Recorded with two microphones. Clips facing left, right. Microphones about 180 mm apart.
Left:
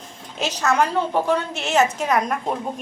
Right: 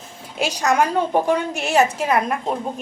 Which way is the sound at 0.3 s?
10° right (ahead or behind).